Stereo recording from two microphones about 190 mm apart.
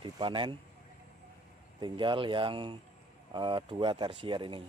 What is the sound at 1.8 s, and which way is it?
Speech, 25° right (ahead or behind).